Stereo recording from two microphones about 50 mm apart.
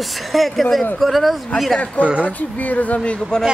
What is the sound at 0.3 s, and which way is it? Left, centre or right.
Speech, centre.